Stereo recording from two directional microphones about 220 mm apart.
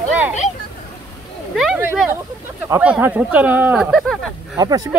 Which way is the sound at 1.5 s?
5° right (ahead or behind).